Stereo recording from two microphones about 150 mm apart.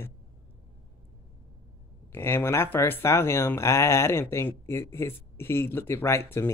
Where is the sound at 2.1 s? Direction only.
15° left (ahead or behind).